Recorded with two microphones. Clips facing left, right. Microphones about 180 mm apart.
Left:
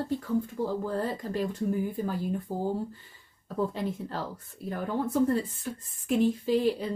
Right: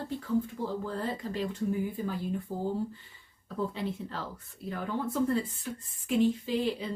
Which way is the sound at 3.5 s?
45° left (ahead or behind).